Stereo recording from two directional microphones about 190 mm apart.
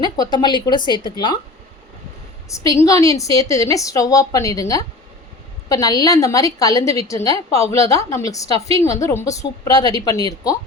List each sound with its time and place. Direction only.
0.0 s speech: 20° left (ahead or behind)
2.5 s a woman's voice: 15° left (ahead or behind)